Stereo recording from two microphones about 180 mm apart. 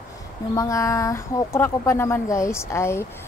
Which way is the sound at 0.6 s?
15° left (ahead or behind).